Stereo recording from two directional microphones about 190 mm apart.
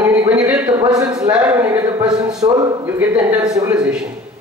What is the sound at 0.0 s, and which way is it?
Speech, 10° right (ahead or behind).